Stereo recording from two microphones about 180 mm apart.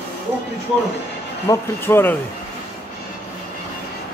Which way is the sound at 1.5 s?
10° left (ahead or behind).